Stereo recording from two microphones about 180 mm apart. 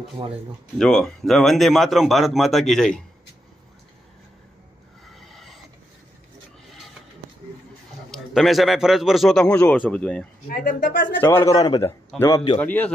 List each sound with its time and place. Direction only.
0.2 s speech: 25° right (ahead or behind)
0.7 s a man's voice: 5° left (ahead or behind)
5.1 s filing: centre (ahead or behind)
8.1 s a man's voice: centre (ahead or behind)
10.5 s speech: 45° left (ahead or behind)
11.1 s a man's voice: 15° left (ahead or behind)
12.5 s a man's voice: 10° left (ahead or behind)